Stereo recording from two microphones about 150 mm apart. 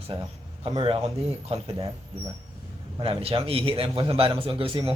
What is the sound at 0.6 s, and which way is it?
Speech, 35° right (ahead or behind).